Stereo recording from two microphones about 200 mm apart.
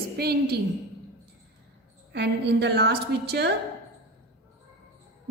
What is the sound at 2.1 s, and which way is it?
A woman's voice, 60° right (ahead or behind).